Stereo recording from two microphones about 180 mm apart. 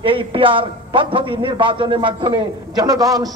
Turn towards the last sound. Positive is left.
turn(degrees=-20)  # may be behind; listen again after turning